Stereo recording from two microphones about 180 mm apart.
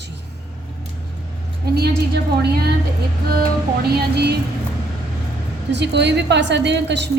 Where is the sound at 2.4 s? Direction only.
65° right (ahead or behind).